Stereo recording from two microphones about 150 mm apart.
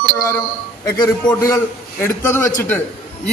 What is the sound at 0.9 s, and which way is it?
A man's voice, 20° left (ahead or behind).